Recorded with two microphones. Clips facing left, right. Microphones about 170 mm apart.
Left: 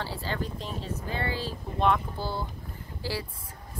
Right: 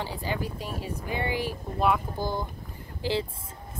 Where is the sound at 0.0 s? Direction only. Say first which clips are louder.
Right 1 dB; 15° right (ahead or behind).